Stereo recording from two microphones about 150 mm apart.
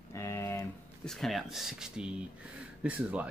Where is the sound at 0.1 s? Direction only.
20° left (ahead or behind).